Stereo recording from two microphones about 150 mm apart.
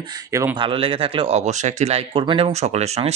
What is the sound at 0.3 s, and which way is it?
Speech, 20° right (ahead or behind).